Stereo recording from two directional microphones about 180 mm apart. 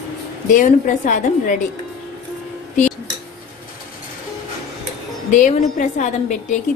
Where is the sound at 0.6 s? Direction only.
45° left (ahead or behind).